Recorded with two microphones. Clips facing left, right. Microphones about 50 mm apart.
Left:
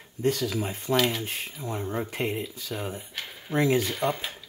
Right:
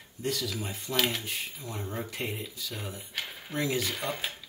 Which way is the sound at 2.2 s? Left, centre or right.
Centre.